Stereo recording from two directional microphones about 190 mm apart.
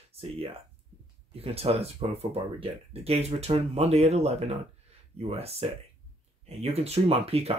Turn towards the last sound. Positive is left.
turn(degrees=-30)  # may be behind; listen again after turning